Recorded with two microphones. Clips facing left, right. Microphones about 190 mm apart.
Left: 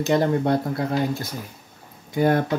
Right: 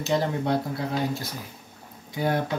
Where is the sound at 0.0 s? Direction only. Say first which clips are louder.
Left 5 dB; 55° left (ahead or behind).